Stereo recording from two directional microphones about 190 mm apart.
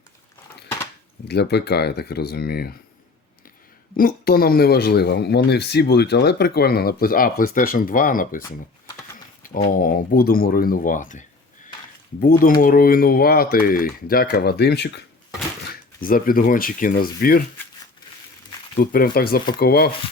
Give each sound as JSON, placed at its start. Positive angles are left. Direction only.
{"t": 1.3, "sound": "speech", "side_deg": 60}
{"t": 3.9, "sound": "speech", "side_deg": 50}
{"t": 9.4, "sound": "speech", "side_deg": 45}
{"t": 16.0, "sound": "speech", "side_deg": 45}
{"t": 18.8, "sound": "speech", "side_deg": 50}